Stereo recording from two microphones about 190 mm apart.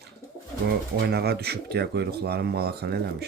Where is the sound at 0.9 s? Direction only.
55° right (ahead or behind).